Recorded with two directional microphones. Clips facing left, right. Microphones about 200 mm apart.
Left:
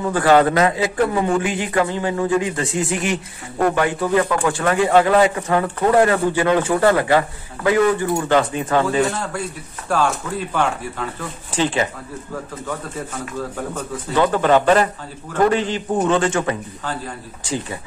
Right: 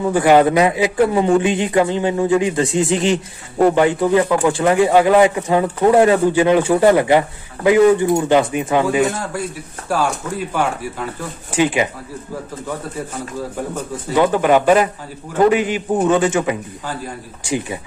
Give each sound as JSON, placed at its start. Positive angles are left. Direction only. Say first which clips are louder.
{"t": 0.0, "sound": "a man's voice", "louder": "right 2 dB", "side_deg": -15}
{"t": 13.7, "sound": "speech", "louder": "right 2 dB", "side_deg": -10}